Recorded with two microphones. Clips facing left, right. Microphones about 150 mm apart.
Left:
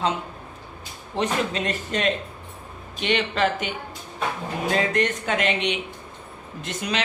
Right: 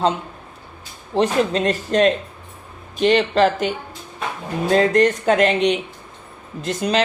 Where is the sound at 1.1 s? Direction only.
35° right (ahead or behind).